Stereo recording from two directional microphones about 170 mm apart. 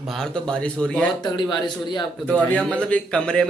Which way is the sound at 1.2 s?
25° left (ahead or behind).